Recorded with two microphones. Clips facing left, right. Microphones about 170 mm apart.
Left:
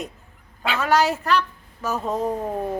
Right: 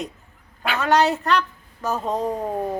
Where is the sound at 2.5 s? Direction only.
15° right (ahead or behind).